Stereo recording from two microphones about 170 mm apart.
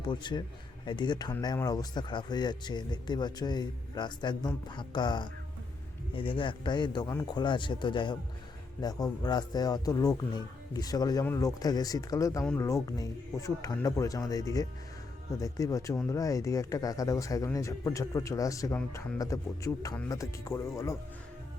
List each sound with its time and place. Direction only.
0.1 s speech: 25° left (ahead or behind)